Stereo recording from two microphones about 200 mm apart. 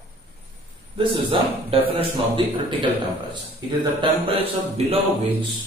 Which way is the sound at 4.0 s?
30° right (ahead or behind).